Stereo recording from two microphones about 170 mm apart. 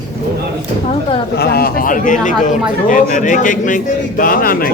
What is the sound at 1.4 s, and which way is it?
A man's voice, 65° left (ahead or behind).